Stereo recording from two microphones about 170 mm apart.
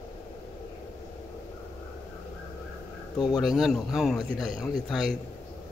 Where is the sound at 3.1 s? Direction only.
25° left (ahead or behind).